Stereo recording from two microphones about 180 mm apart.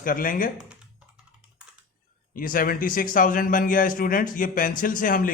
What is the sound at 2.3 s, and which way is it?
A man's voice, 50° left (ahead or behind).